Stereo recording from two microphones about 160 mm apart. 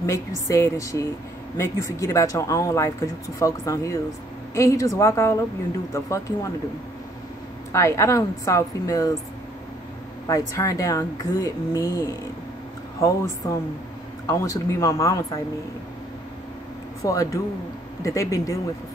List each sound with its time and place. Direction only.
0.0 s speech: 20° left (ahead or behind)
7.7 s speech: 20° left (ahead or behind)
10.2 s speech: 20° left (ahead or behind)
17.0 s speech: 20° left (ahead or behind)